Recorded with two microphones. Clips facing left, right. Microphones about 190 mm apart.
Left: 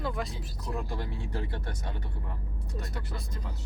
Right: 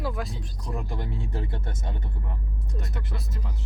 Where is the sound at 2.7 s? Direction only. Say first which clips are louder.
Right 2 dB; centre (ahead or behind).